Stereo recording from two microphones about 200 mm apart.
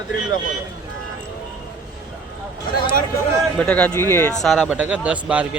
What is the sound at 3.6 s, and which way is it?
Speech, 5° left (ahead or behind).